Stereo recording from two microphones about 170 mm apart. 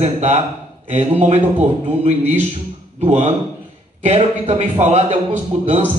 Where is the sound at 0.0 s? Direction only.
40° right (ahead or behind).